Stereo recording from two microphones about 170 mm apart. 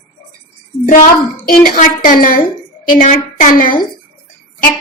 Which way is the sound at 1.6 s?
50° left (ahead or behind).